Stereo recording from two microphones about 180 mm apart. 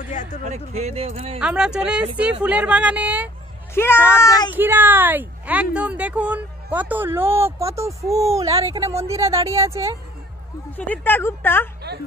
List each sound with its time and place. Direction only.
0.1 s a sound: 45° left (ahead or behind)
0.5 s speech: 40° right (ahead or behind)
1.4 s speech: 5° right (ahead or behind)
3.7 s speech: 15° left (ahead or behind)
4.5 s speech: 10° right (ahead or behind)
10.8 s speech: 10° left (ahead or behind)